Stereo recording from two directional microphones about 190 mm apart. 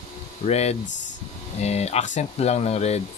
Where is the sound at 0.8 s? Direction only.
70° left (ahead or behind).